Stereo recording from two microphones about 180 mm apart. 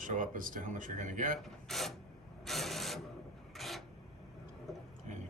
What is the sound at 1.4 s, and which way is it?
Mechanisms, centre (ahead or behind).